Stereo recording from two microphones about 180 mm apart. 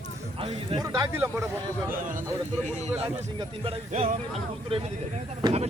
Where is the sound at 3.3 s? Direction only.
30° right (ahead or behind).